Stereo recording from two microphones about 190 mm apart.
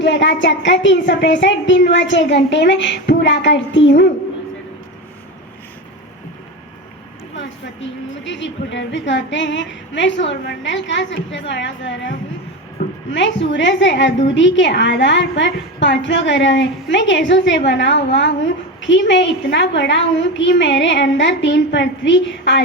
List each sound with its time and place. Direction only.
0.0 s a woman's voice: 70° left (ahead or behind)
7.3 s a woman's voice: 70° left (ahead or behind)